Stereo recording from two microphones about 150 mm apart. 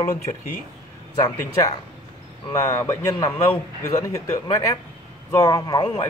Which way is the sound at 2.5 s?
20° left (ahead or behind).